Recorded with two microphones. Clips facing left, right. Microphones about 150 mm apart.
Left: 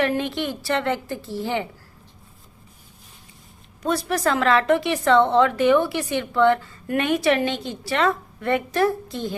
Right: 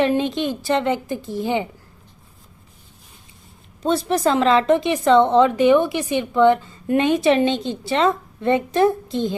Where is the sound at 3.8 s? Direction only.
25° right (ahead or behind).